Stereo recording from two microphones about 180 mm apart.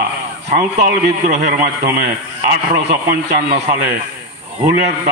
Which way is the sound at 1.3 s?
45° right (ahead or behind).